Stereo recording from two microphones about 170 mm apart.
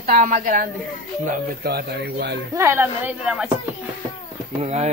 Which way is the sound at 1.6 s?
65° right (ahead or behind).